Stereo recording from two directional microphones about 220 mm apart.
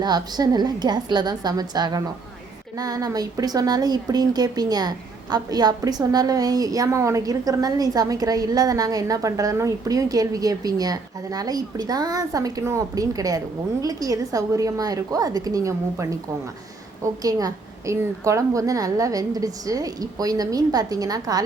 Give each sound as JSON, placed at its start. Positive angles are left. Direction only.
{"t": 0.0, "sound": "a woman's voice", "side_deg": -20}